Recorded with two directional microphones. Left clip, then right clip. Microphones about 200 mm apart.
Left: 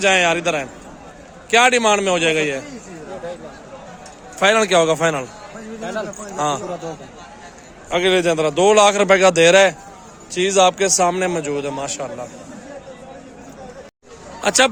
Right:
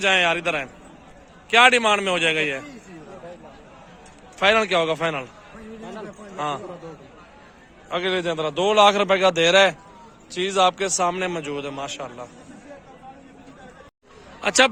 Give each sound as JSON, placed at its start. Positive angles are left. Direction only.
{"t": 0.0, "sound": "a man's voice", "side_deg": 0}
{"t": 4.4, "sound": "a man's voice", "side_deg": 10}
{"t": 6.3, "sound": "a man's voice", "side_deg": 10}
{"t": 7.9, "sound": "a man's voice", "side_deg": 15}
{"t": 14.4, "sound": "a man's voice", "side_deg": 5}